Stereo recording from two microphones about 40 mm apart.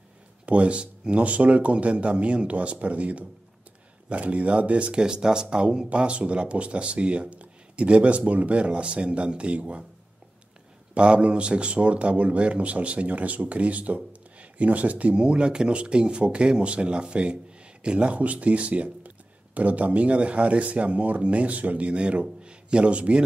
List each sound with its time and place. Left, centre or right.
0.5 s speech: right
11.0 s speech: right
15.1 s speech: right